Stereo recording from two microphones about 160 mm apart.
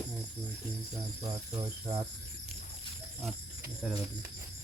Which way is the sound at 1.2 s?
25° right (ahead or behind).